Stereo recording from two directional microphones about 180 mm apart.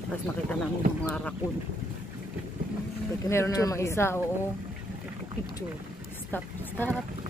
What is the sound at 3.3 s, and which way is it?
Speech, 15° left (ahead or behind).